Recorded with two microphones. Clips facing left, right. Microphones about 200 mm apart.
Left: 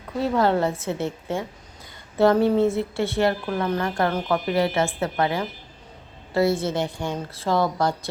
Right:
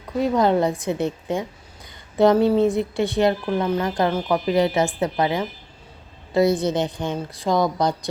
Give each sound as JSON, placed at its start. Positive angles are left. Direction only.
{"t": 0.2, "sound": "a woman's voice", "side_deg": -15}